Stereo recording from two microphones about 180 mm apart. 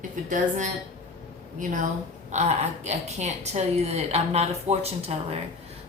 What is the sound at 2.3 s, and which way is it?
A woman's voice, 35° right (ahead or behind).